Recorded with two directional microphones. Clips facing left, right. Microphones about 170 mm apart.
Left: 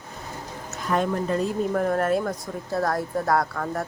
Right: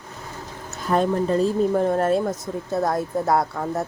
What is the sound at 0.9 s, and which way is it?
Speech, 30° right (ahead or behind).